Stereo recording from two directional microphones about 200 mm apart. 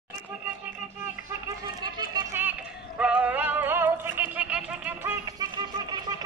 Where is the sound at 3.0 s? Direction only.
5° right (ahead or behind).